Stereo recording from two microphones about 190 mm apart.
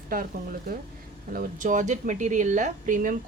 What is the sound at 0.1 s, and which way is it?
Speech, 50° right (ahead or behind).